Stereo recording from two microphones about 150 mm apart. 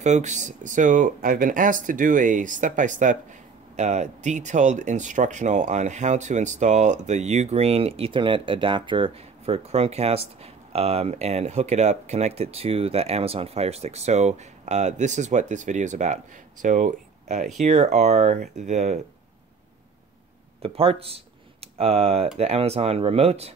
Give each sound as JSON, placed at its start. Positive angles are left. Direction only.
{"t": 0.0, "sound": "speech", "side_deg": -50}
{"t": 20.6, "sound": "speech", "side_deg": -40}